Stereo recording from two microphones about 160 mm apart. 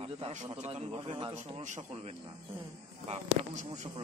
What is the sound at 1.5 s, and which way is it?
Speech, 45° right (ahead or behind).